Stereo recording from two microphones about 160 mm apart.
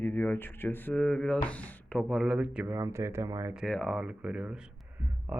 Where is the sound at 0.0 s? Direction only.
15° left (ahead or behind); by 2.7 s 5° right (ahead or behind).